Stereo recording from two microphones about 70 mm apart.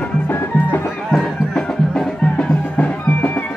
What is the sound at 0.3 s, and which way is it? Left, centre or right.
Music, left.